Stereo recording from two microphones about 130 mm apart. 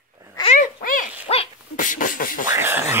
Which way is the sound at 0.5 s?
80° left.